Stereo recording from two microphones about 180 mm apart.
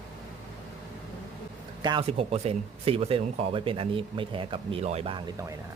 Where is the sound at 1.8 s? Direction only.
25° right (ahead or behind).